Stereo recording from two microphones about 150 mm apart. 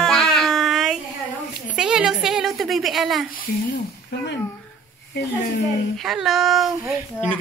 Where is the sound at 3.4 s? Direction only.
70° left (ahead or behind).